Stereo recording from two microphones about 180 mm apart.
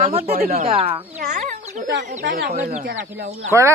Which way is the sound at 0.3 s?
55° right (ahead or behind).